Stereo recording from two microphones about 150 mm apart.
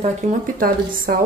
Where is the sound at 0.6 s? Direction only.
70° right (ahead or behind).